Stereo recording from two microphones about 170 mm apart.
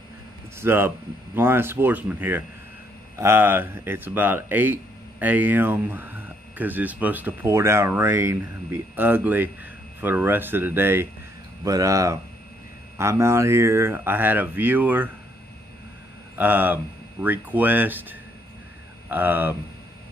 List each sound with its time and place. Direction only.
0.6 s speech: 15° right (ahead or behind)
16.3 s speech: 10° right (ahead or behind)
19.0 s speech: 10° right (ahead or behind)